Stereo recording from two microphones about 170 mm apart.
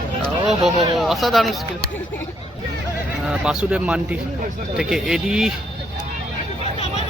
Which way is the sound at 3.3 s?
5° right (ahead or behind).